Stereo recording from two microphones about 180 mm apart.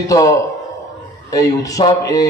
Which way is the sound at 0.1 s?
20° left (ahead or behind).